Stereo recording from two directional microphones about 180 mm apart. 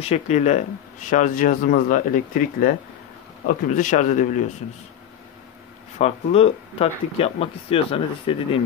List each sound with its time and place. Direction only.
0.0 s speech: 35° left (ahead or behind)
5.9 s speech: 35° left (ahead or behind)